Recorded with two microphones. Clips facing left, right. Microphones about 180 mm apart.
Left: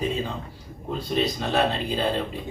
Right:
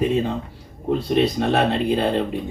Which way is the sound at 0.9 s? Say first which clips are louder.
Right 6 dB; 60° right (ahead or behind).